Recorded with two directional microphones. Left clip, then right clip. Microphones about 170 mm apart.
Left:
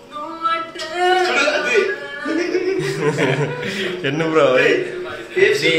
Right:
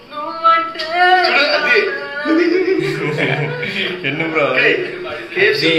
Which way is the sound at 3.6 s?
45° left (ahead or behind).